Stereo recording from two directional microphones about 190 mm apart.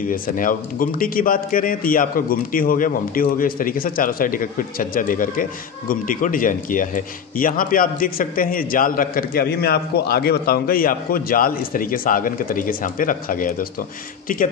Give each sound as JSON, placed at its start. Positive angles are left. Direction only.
{"t": 0.1, "sound": "a man's voice", "side_deg": 45}